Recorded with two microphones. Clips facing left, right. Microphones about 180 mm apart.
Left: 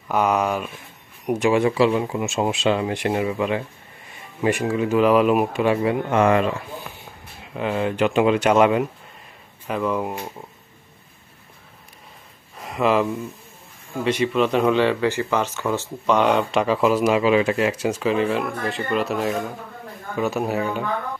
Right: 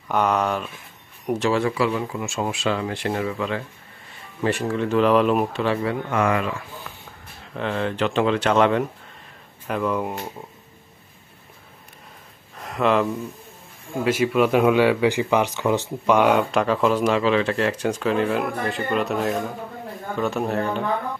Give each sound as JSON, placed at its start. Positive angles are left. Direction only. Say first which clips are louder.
{"t": 0.1, "sound": "speech", "louder": "left 1 dB", "side_deg": 10}
{"t": 7.5, "sound": "speech", "louder": "left 2 dB", "side_deg": 10}
{"t": 12.5, "sound": "a sound", "louder": "left 1 dB", "side_deg": 5}
{"t": 14.0, "sound": "speech", "louder": "right 1 dB", "side_deg": -5}